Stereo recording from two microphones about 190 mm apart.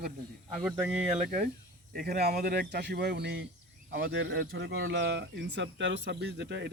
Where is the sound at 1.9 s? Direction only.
50° right (ahead or behind).